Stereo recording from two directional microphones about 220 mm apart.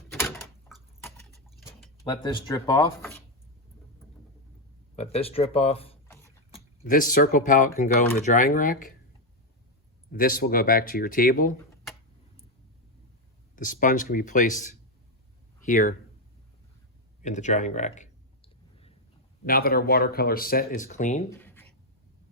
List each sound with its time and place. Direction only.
1.5 s tick-tock: centre (ahead or behind)
2.0 s speech: 20° left (ahead or behind)
4.9 s speech: 25° left (ahead or behind)
6.5 s speech: 40° left (ahead or behind)
10.1 s speech: 40° left (ahead or behind)
13.6 s speech: 35° left (ahead or behind)
17.2 s clicking: 35° left (ahead or behind)
19.5 s speech: 45° left (ahead or behind)
21.2 s writing: 10° left (ahead or behind)